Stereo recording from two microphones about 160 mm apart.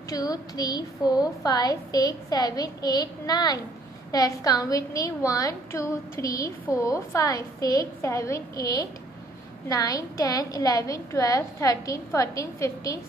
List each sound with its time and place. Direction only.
0.1 s a woman's voice: 25° left (ahead or behind)